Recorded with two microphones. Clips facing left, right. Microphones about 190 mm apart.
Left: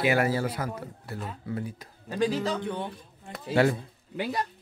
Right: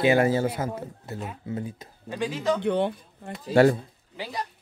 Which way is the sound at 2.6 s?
85° right.